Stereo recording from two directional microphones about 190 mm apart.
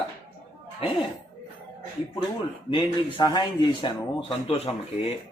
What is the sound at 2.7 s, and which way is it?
Speech, 25° left (ahead or behind).